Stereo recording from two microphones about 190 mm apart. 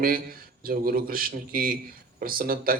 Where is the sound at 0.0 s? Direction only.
50° right (ahead or behind).